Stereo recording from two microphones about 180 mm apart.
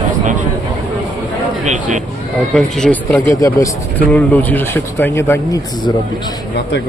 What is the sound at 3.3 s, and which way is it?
Speech, 15° left (ahead or behind).